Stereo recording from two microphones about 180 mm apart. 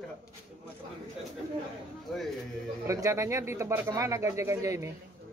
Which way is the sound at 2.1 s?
Centre (ahead or behind).